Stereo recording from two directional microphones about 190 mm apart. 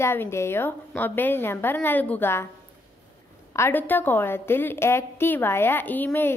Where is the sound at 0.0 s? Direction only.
15° left (ahead or behind).